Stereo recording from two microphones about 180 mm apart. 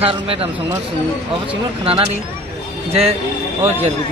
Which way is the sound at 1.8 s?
35° right (ahead or behind).